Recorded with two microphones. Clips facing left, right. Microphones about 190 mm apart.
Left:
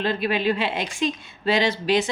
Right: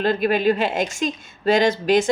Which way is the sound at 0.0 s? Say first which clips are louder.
Right 4 dB; 45° right (ahead or behind).